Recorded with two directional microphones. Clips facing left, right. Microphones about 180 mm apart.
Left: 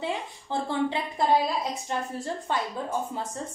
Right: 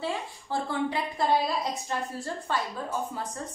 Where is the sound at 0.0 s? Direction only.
20° left (ahead or behind).